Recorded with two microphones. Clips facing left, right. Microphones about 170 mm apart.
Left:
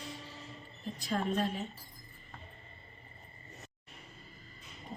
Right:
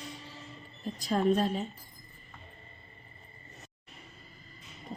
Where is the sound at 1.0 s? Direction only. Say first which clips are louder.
Right 6 dB; 35° right (ahead or behind).